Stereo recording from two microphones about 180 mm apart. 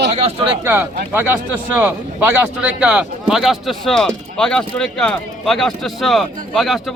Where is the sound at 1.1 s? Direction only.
10° right (ahead or behind).